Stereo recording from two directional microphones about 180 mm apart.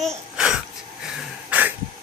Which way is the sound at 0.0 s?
Centre (ahead or behind).